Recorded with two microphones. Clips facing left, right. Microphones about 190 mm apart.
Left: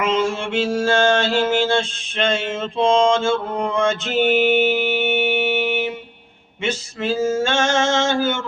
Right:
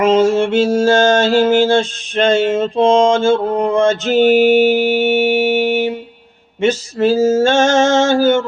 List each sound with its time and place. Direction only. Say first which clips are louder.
0.0 s mantra: right 9 dB; 40° right (ahead or behind)